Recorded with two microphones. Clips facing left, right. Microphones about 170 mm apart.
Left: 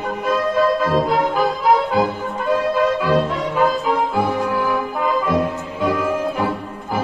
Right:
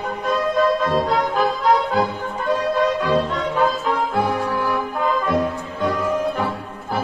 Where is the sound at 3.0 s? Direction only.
10° left (ahead or behind).